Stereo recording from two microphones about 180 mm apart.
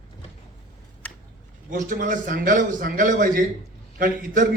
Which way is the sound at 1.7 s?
50° right (ahead or behind).